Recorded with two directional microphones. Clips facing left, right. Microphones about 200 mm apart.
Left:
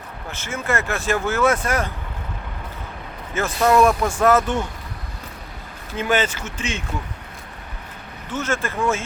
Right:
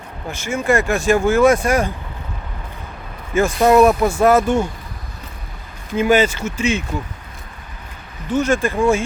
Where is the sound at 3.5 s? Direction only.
20° right (ahead or behind).